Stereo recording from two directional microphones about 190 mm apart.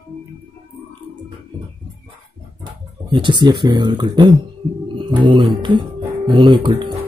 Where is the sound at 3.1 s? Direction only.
25° right (ahead or behind).